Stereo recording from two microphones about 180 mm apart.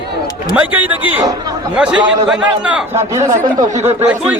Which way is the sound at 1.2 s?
20° right (ahead or behind).